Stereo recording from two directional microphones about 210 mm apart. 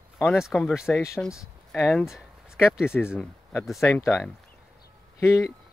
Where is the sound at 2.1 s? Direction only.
5° right (ahead or behind).